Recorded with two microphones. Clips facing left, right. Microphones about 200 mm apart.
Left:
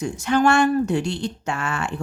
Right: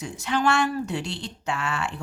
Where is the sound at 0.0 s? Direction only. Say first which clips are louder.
Left 6 dB; 45° left (ahead or behind).